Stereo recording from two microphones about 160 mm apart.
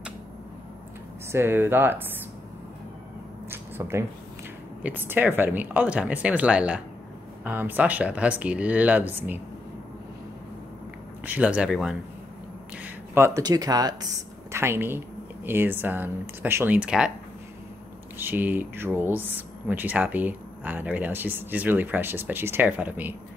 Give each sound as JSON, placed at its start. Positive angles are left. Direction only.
{"t": 1.3, "sound": "speech", "side_deg": -15}
{"t": 3.4, "sound": "a sound", "side_deg": -15}
{"t": 4.8, "sound": "speech", "side_deg": -10}
{"t": 11.2, "sound": "speech", "side_deg": -10}
{"t": 18.1, "sound": "speech", "side_deg": -10}